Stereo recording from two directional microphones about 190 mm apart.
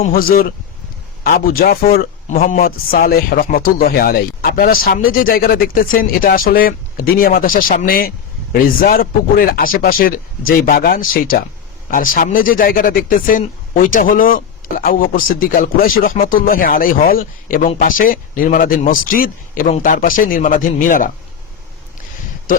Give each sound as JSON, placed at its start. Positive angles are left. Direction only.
{"t": 0.1, "sound": "a man's voice", "side_deg": 50}